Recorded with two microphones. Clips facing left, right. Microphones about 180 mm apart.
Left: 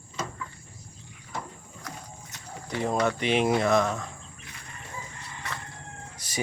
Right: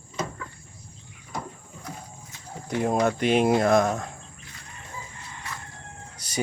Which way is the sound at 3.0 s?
45° right (ahead or behind).